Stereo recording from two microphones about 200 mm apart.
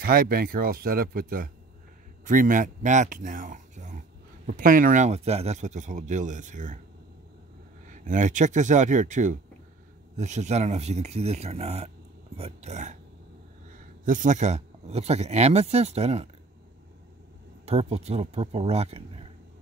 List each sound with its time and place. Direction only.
0.0 s speech: 45° right (ahead or behind)
7.9 s speech: 40° right (ahead or behind)
14.0 s speech: 40° right (ahead or behind)
17.6 s speech: 30° right (ahead or behind)